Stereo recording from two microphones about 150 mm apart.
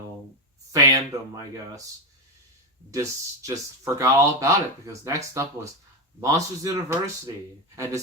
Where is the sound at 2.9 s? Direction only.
20° right (ahead or behind).